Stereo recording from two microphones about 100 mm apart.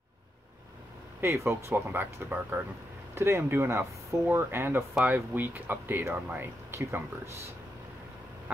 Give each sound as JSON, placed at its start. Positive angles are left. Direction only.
{"t": 1.2, "sound": "speech", "side_deg": -20}